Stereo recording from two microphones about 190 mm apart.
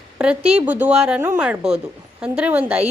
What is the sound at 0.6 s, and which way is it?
A woman's voice, 10° right (ahead or behind).